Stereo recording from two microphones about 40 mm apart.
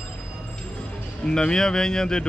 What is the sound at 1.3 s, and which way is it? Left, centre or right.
Speech, centre.